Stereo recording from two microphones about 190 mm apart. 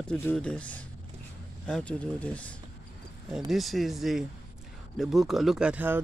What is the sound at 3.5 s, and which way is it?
Speech, centre (ahead or behind).